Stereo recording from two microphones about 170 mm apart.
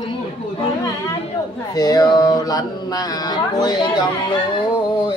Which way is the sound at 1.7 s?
20° left (ahead or behind).